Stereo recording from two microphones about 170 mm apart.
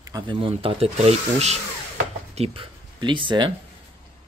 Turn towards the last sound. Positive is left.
turn(degrees=-30)  # may be behind; listen again after turning